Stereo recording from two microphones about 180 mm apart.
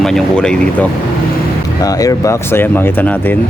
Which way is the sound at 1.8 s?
20° left (ahead or behind).